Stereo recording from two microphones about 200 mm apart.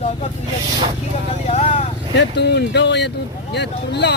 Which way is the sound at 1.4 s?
35° left (ahead or behind).